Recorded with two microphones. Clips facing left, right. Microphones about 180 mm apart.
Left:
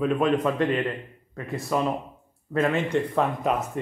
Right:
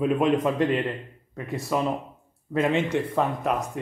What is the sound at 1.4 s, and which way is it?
Speech, centre (ahead or behind).